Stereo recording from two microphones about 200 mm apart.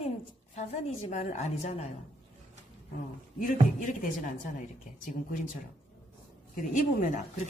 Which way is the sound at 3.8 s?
40° left (ahead or behind).